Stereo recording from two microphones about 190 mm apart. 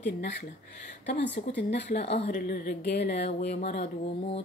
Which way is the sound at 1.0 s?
65° left (ahead or behind).